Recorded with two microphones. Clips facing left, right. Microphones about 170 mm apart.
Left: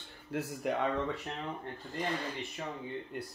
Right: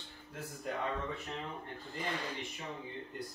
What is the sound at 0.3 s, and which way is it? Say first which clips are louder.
Speech: left 7 dB; 80° left.